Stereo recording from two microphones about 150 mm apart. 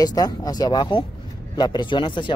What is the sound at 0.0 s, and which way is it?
A man's voice, 25° left (ahead or behind).